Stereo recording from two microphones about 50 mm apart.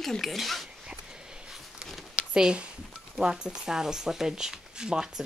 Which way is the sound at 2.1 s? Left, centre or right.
Centre.